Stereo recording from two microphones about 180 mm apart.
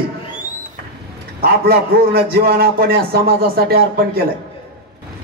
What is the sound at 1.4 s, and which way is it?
A man's voice, 60° right (ahead or behind).